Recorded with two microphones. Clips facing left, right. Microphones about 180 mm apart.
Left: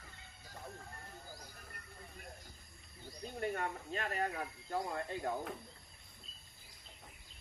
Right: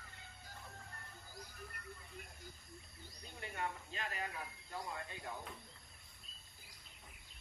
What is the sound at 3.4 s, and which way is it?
Speech, 50° left (ahead or behind).